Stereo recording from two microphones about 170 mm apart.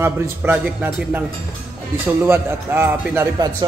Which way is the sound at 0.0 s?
10° right (ahead or behind).